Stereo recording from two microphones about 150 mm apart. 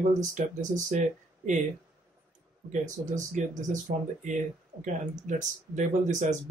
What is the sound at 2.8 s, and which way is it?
Speech, 55° right (ahead or behind).